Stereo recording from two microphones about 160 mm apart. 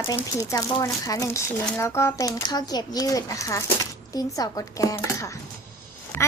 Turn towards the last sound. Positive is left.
turn(degrees=15)  # may be behind; listen again after turning